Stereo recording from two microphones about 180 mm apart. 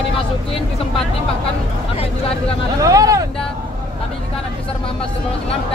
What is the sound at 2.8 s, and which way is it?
Speech, 20° right (ahead or behind).